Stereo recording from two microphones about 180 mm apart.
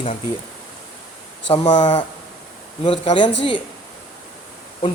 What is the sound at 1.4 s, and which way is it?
Speech, 25° left (ahead or behind).